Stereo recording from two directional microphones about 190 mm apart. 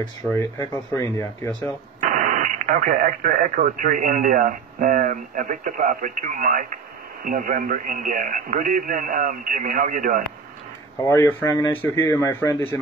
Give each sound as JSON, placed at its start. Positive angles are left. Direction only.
{"t": 0.3, "sound": "a man's voice", "side_deg": 15}
{"t": 2.0, "sound": "speech", "side_deg": -40}
{"t": 11.0, "sound": "a man's voice", "side_deg": 15}